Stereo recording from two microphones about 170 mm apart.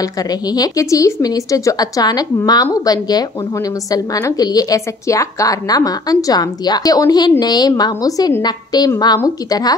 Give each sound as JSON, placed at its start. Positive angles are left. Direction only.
{"t": 0.0, "sound": "a woman's voice", "side_deg": 20}